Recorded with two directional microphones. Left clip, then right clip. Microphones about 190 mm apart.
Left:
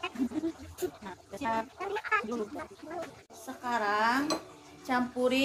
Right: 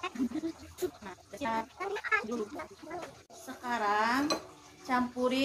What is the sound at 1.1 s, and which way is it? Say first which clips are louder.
Speech: left 2 dB; 25° left (ahead or behind).